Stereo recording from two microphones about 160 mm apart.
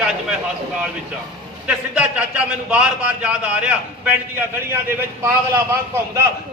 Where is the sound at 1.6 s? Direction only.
5° right (ahead or behind).